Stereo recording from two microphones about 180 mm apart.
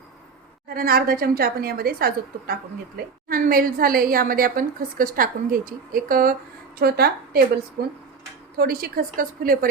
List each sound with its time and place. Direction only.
0.7 s a woman's voice: 55° right (ahead or behind)